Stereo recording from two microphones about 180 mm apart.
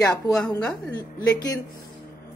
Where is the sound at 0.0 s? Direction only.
5° left (ahead or behind).